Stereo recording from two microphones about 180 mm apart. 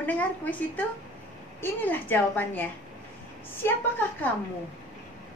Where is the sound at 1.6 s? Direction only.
10° left (ahead or behind).